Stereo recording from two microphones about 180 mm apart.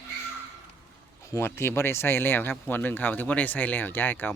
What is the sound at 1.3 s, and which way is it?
Speech, 15° left (ahead or behind).